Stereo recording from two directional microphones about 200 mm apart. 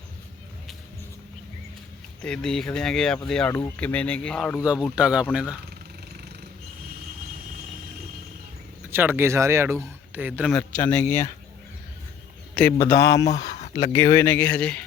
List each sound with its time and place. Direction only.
2.2 s speech: 5° left (ahead or behind)
4.6 s speech: 5° right (ahead or behind)
8.9 s speech: 10° right (ahead or behind)
10.5 s speech: 10° left (ahead or behind)
12.8 s speech: 15° left (ahead or behind)